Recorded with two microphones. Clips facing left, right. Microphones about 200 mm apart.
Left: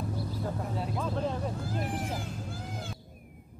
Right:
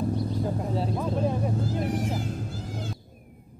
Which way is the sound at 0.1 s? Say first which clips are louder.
Right 6 dB; 25° right (ahead or behind).